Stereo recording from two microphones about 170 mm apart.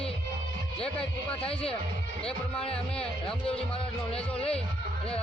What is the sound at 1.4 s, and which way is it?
Speech, 35° left (ahead or behind).